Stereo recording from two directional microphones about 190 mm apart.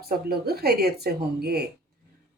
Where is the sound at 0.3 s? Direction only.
55° right (ahead or behind).